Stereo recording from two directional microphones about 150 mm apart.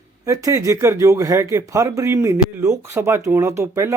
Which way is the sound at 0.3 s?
20° right (ahead or behind).